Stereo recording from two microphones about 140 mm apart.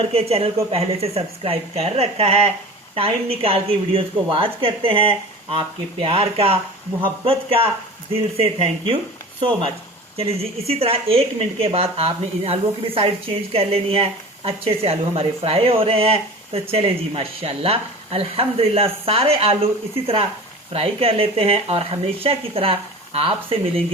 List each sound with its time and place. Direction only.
0.0 s a woman's voice: 45° right (ahead or behind)
20.7 s speech: 45° right (ahead or behind)